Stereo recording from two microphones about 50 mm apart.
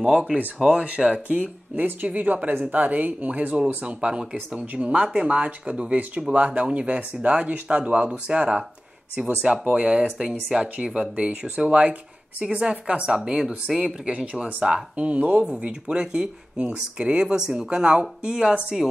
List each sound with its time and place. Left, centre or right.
0.0 s speech: centre